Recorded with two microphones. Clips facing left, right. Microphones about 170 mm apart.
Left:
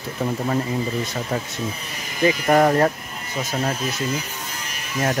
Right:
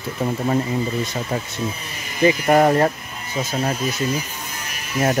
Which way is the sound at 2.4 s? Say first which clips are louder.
Even; 15° right (ahead or behind).